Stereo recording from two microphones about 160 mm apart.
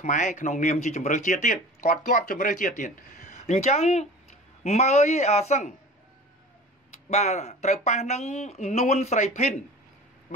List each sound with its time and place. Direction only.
0.0 s speech: 50° left (ahead or behind)
7.1 s speech: 45° left (ahead or behind)